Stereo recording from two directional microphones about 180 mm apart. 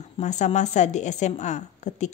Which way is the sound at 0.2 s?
40° left (ahead or behind).